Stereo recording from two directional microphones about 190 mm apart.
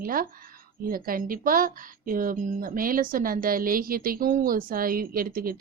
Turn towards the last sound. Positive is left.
turn(degrees=-50)  # may be behind; listen again after turning